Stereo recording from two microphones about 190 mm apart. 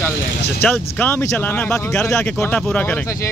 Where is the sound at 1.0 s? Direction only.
10° left (ahead or behind).